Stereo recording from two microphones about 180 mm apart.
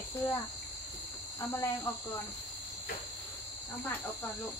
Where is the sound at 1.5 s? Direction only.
15° left (ahead or behind).